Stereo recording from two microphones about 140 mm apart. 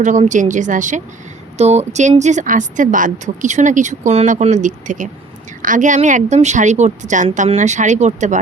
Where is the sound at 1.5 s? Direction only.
50° right (ahead or behind).